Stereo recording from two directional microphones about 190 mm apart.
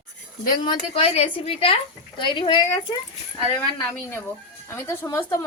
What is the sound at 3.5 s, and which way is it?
A woman's voice, 10° left (ahead or behind).